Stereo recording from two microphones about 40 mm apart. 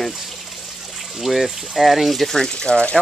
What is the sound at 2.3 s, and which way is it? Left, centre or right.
Speech, centre.